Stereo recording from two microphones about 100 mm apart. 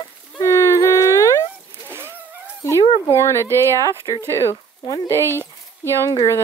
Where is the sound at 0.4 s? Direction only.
30° left (ahead or behind).